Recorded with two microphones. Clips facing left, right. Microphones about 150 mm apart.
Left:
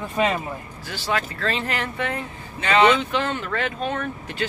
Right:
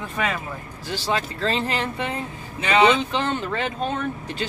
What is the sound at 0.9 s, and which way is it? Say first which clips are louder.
Speech: right 1 dB; 25° right (ahead or behind).